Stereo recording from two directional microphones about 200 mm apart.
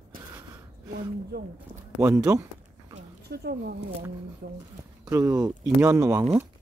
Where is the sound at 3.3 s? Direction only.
50° right (ahead or behind).